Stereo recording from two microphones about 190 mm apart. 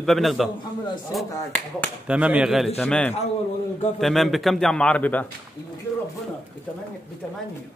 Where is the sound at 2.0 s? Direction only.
5° right (ahead or behind).